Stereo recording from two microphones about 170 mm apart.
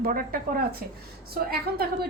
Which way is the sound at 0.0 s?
55° right (ahead or behind).